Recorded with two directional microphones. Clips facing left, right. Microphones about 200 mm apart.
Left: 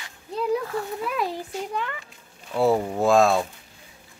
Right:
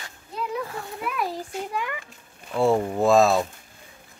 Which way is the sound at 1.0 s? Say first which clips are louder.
Right 1 dB; 25° left (ahead or behind).